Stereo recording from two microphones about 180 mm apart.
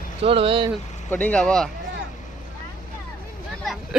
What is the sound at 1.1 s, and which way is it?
Speech, 10° left (ahead or behind).